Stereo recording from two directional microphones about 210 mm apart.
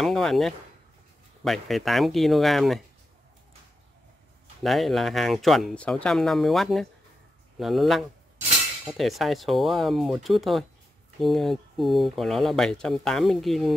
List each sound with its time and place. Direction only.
0.0 s speech: centre (ahead or behind)
4.6 s speech: centre (ahead or behind)